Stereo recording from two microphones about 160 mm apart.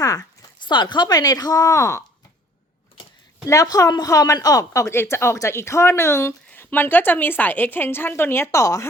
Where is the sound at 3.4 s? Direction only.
20° left (ahead or behind).